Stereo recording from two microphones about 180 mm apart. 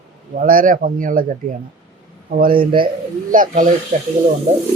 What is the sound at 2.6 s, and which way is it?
Speech, 30° right (ahead or behind).